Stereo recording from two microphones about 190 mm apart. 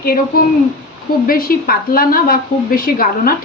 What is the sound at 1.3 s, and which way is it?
A woman's voice, 50° left (ahead or behind).